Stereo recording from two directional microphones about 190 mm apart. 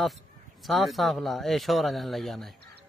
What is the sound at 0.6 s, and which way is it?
Speech, centre (ahead or behind).